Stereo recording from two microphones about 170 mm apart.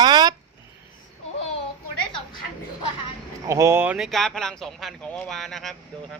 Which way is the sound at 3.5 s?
20° right (ahead or behind).